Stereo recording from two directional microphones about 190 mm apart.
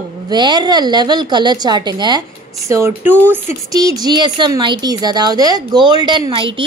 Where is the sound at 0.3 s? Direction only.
25° right (ahead or behind).